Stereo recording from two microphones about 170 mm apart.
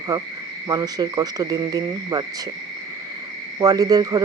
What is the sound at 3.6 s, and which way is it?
Speech, 20° right (ahead or behind).